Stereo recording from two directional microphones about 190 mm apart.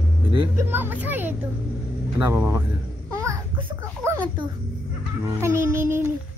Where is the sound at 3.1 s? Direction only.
15° right (ahead or behind).